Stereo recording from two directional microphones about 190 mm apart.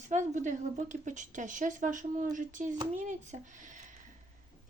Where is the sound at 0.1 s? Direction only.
40° right (ahead or behind).